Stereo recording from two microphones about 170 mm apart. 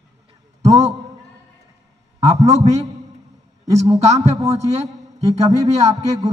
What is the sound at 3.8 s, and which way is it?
Speech, 40° right (ahead or behind).